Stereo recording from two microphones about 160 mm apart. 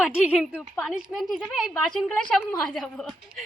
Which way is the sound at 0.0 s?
5° right (ahead or behind).